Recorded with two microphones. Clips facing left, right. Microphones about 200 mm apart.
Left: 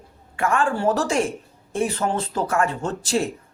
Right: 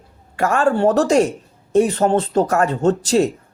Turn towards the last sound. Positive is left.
turn(degrees=-40)  # may be behind; listen again after turning